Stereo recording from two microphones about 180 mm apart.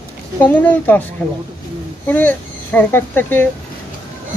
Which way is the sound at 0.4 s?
10° left (ahead or behind).